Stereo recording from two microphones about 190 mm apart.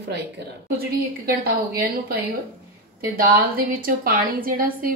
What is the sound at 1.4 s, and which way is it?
A woman's voice, 50° right (ahead or behind).